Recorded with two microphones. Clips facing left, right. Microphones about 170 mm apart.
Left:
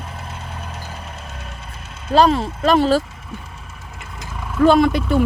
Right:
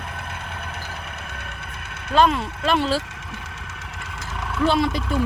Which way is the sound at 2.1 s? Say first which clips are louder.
Left 4 dB; 35° left (ahead or behind).